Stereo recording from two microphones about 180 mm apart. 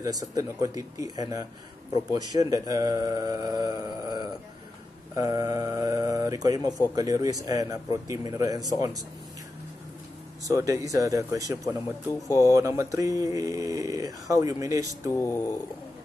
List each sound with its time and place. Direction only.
0.0 s speech: 20° right (ahead or behind)
10.5 s speech: 15° right (ahead or behind)
12.1 s speech: 15° left (ahead or behind)
12.5 s speech: 15° right (ahead or behind)
15.1 s speech: 15° left (ahead or behind)